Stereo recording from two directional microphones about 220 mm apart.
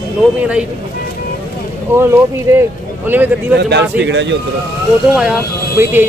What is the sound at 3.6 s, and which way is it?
Speech, 50° right (ahead or behind).